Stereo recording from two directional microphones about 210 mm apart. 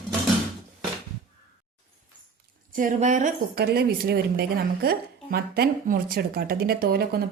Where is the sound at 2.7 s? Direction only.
40° right (ahead or behind).